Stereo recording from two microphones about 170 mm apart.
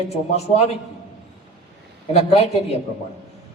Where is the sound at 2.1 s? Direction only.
35° left (ahead or behind).